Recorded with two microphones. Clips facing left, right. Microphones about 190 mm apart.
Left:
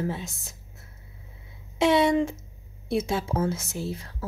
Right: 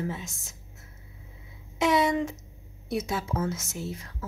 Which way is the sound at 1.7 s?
30° left (ahead or behind).